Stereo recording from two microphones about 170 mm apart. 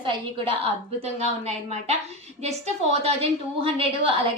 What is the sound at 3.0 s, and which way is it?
A woman's voice, 35° right (ahead or behind).